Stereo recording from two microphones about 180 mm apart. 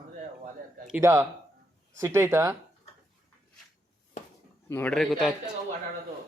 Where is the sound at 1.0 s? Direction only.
15° right (ahead or behind).